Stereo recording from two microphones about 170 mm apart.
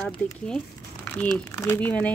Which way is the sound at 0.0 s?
5° left (ahead or behind).